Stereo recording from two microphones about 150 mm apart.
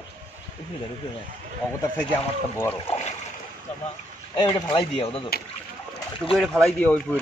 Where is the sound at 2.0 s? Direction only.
15° left (ahead or behind).